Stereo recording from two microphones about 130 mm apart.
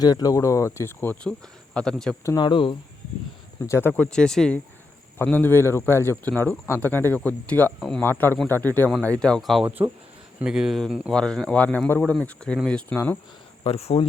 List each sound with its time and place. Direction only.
0.0 s speech: 30° left (ahead or behind)
1.2 s speech: 5° left (ahead or behind)
2.2 s speech: 30° left (ahead or behind)
3.7 s speech: 15° left (ahead or behind)
8.0 s speech: 15° left (ahead or behind); by 9.6 s centre (ahead or behind)
9.6 s speech: 15° right (ahead or behind); by 12.8 s 5° left (ahead or behind)
12.9 s speech: 15° left (ahead or behind)
13.7 s speech: 50° left (ahead or behind)